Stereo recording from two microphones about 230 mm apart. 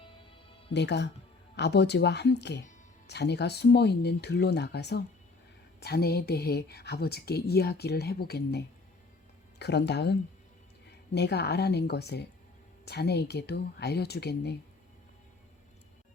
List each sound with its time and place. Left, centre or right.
0.7 s speech: left